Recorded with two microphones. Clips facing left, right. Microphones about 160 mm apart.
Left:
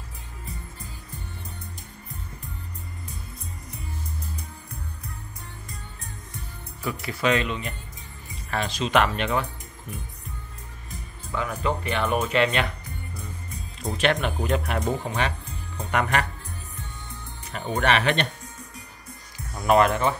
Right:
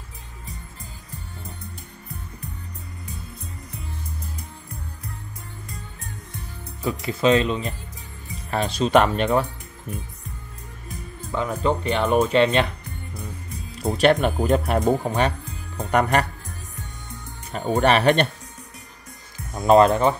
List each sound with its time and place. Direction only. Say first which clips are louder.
6.8 s speech: right 5 dB; 25° right (ahead or behind)
11.3 s speech: right 4 dB; 30° right (ahead or behind)
13.9 s speech: right 6 dB; 40° right (ahead or behind)
17.5 s speech: right 5 dB; 35° right (ahead or behind)
19.5 s speech: right 5 dB; 25° right (ahead or behind)